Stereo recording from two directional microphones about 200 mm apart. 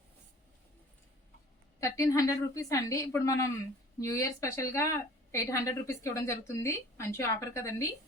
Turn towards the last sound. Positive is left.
turn(degrees=15)  # may be behind; listen again after turning